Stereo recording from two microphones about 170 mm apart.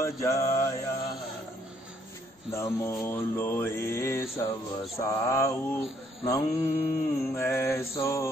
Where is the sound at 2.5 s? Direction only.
15° left (ahead or behind).